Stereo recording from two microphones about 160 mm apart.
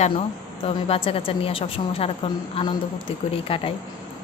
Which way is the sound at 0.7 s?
35° left (ahead or behind).